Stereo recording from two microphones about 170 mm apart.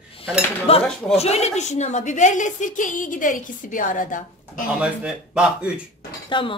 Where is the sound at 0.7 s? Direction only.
35° left (ahead or behind); by 4.6 s 50° left (ahead or behind).